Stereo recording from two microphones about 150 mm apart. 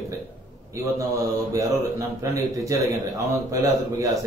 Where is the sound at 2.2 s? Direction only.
20° right (ahead or behind).